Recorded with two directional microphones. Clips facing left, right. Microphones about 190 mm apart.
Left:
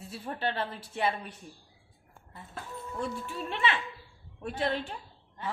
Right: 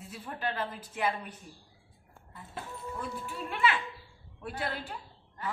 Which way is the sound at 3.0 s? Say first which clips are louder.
Left 5 dB; 30° left (ahead or behind).